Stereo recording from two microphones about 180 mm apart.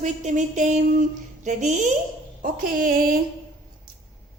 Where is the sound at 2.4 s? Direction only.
50° right (ahead or behind).